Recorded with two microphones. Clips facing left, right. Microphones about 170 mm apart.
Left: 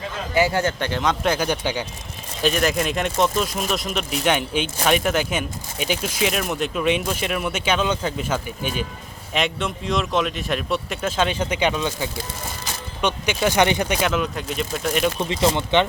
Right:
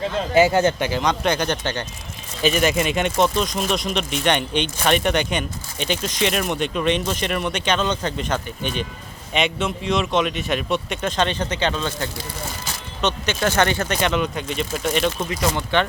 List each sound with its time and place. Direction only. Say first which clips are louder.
0.3 s speech: right 4 dB; 20° right (ahead or behind)
0.8 s speech: right 1 dB; 5° right (ahead or behind)
15.3 s speech: left 2 dB; 20° left (ahead or behind)